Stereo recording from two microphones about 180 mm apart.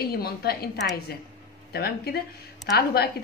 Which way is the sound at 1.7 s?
60° left (ahead or behind).